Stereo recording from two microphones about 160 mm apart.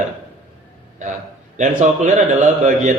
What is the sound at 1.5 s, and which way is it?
Speech, 50° right (ahead or behind).